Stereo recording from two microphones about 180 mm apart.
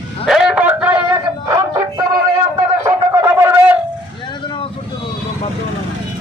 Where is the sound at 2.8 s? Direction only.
15° right (ahead or behind).